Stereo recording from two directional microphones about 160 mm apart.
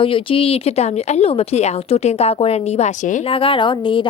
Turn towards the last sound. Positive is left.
turn(degrees=30)  # may be behind; listen again after turning